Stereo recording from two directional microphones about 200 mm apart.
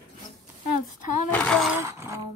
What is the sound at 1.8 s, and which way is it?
Music, 15° right (ahead or behind).